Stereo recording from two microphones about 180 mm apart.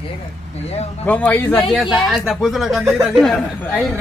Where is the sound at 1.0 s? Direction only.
10° left (ahead or behind).